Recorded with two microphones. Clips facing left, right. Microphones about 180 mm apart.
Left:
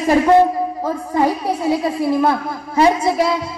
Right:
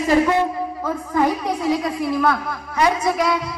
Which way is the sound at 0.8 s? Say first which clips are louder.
Left 1 dB; 35° left (ahead or behind).